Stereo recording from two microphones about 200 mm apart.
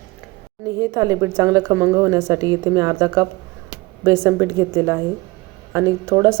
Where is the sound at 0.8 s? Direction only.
15° right (ahead or behind).